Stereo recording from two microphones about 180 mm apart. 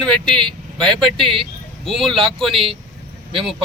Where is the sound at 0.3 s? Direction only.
25° right (ahead or behind).